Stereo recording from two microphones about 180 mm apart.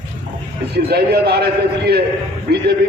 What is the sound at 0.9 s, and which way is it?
A man's voice, 60° right (ahead or behind).